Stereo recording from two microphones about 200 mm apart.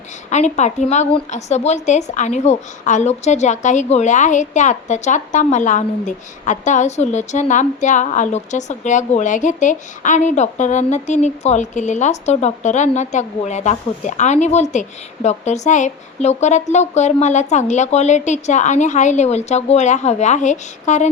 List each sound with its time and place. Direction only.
0.3 s a woman's voice: 35° left (ahead or behind)